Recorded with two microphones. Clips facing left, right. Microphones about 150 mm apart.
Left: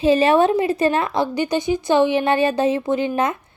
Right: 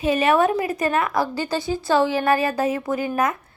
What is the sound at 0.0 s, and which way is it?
A woman's voice, 30° left (ahead or behind).